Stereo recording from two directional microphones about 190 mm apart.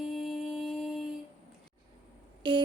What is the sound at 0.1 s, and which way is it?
Music, centre (ahead or behind).